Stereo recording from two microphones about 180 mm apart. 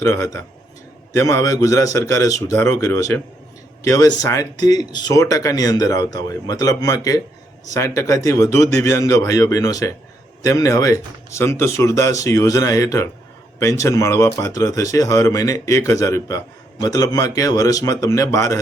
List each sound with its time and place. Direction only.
0.0 s speech: 15° left (ahead or behind)